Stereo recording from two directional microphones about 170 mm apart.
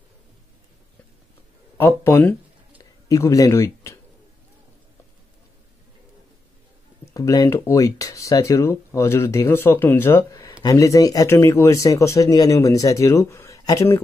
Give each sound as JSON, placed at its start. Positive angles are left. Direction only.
{"t": 1.8, "sound": "speech", "side_deg": 15}
{"t": 7.2, "sound": "speech", "side_deg": 20}